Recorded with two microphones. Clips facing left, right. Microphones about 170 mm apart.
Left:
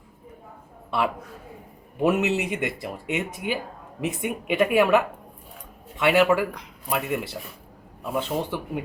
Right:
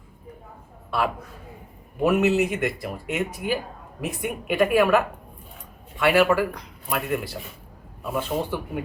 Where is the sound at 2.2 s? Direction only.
20° left (ahead or behind).